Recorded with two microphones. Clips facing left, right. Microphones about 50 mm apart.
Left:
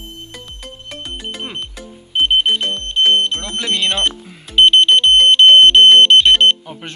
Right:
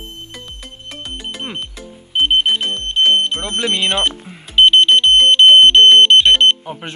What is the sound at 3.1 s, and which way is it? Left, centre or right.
Music, centre.